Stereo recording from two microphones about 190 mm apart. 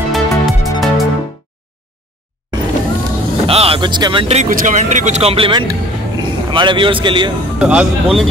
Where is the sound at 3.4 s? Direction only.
30° right (ahead or behind).